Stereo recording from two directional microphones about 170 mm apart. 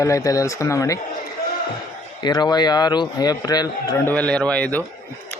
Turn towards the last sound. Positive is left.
turn(degrees=5)  # may be behind; listen again after turning